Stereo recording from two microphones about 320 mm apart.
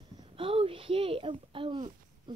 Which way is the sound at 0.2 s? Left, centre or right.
Centre.